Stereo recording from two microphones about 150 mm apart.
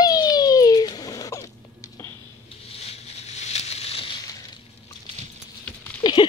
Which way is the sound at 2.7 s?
45° left (ahead or behind).